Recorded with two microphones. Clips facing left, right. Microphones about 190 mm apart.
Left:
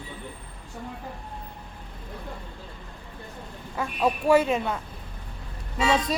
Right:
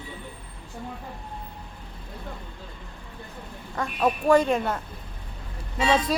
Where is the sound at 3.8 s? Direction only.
5° left (ahead or behind).